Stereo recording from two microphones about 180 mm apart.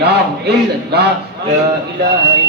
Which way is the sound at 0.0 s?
65° right (ahead or behind).